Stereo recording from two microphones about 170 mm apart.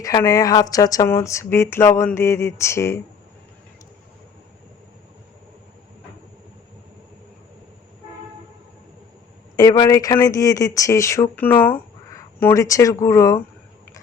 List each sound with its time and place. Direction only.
0.0 s speech: 20° left (ahead or behind)
9.6 s speech: 25° left (ahead or behind)